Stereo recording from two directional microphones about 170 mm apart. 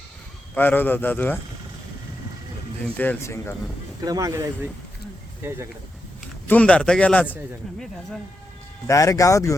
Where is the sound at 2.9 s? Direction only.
10° left (ahead or behind).